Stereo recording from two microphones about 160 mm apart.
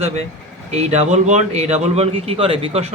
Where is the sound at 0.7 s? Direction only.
45° right (ahead or behind).